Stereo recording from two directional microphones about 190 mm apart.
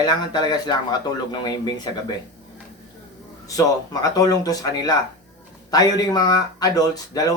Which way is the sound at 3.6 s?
20° left (ahead or behind).